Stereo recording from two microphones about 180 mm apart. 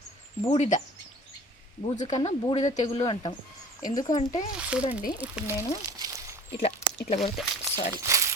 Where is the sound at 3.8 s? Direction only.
45° left (ahead or behind).